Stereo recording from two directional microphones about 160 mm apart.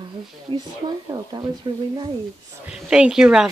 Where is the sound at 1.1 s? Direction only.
25° right (ahead or behind).